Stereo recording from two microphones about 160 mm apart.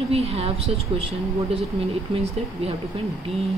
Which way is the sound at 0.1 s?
40° right (ahead or behind).